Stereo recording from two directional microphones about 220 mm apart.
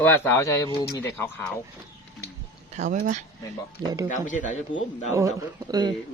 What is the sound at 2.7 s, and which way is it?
Speech, 35° right (ahead or behind).